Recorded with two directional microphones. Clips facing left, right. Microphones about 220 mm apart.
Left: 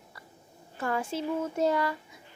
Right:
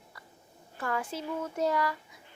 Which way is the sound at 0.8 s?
25° left (ahead or behind).